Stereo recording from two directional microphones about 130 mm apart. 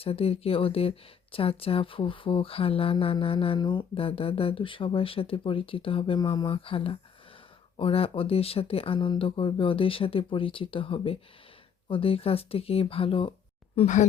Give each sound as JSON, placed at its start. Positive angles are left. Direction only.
{"t": 0.0, "sound": "speech", "side_deg": 50}
{"t": 13.8, "sound": "speech", "side_deg": 65}